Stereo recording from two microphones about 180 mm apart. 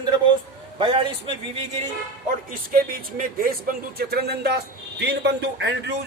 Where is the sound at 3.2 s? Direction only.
50° right (ahead or behind); by 5.9 s 75° right (ahead or behind).